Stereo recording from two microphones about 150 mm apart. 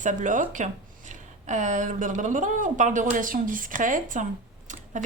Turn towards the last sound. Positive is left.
turn(degrees=-55)  # may be behind; listen again after turning